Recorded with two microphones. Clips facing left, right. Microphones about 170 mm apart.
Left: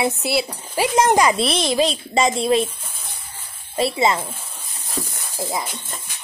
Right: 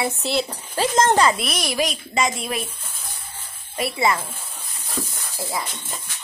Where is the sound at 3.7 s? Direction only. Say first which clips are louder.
Left 3 dB; 25° left (ahead or behind).